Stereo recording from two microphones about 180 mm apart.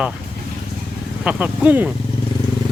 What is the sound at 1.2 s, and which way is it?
Speech, 10° right (ahead or behind).